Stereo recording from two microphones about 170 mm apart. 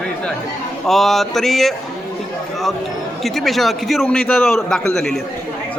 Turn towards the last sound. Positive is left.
turn(degrees=0)  # may be behind; listen again after turning